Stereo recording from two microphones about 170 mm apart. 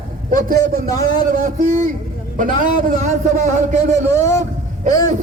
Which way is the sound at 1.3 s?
50° right (ahead or behind).